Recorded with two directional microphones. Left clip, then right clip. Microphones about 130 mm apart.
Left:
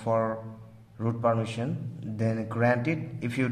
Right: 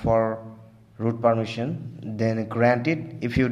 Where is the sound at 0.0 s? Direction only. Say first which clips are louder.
Right 5 dB; 25° right (ahead or behind).